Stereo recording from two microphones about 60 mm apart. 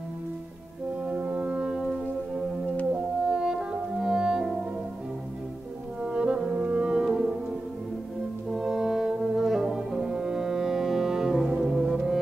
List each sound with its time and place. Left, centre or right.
1.1 s brass instrument: right
2.9 s music: centre
6.0 s brass instrument: centre
7.1 s music: centre
8.5 s brass instrument: centre